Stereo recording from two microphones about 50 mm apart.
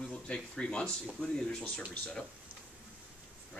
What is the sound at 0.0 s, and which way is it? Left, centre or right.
Speech, left.